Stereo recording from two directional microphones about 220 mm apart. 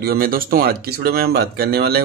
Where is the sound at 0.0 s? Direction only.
45° right (ahead or behind).